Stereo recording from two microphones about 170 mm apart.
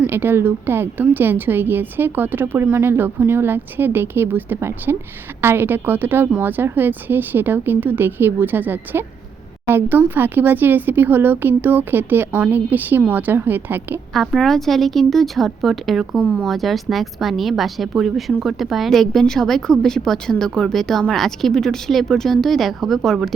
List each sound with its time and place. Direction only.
0.0 s a woman's voice: 10° right (ahead or behind)
14.1 s a woman's voice: centre (ahead or behind)